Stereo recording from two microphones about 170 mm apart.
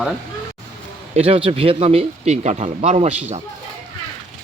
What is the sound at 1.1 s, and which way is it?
Speech, 35° right (ahead or behind).